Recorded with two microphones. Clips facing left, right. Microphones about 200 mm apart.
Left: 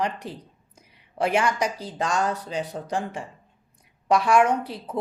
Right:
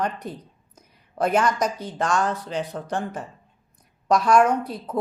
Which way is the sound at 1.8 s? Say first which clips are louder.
Right 2 dB; 35° left (ahead or behind).